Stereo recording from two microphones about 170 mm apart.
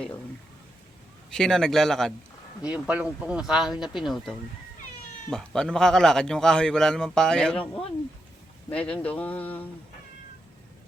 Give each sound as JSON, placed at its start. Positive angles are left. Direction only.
{"t": 1.3, "sound": "a man's voice", "side_deg": 5}
{"t": 2.6, "sound": "a man's voice", "side_deg": -10}
{"t": 8.7, "sound": "a sound", "side_deg": 5}